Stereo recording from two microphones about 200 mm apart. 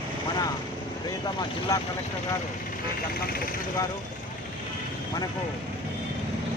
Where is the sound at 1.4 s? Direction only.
20° left (ahead or behind).